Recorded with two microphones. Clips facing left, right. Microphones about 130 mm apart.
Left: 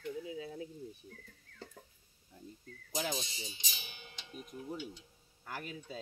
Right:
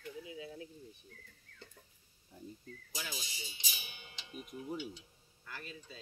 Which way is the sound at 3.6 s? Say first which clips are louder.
Even; 10° right (ahead or behind).